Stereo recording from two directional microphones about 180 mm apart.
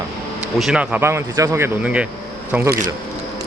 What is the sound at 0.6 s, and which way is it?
Speech, 5° right (ahead or behind).